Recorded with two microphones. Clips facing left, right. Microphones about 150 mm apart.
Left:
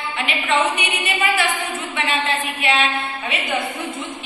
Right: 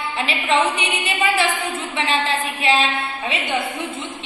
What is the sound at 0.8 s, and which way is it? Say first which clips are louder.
Speech: even; 30° right (ahead or behind).